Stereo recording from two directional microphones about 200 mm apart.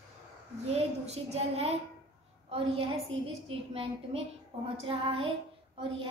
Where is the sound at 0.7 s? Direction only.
30° right (ahead or behind).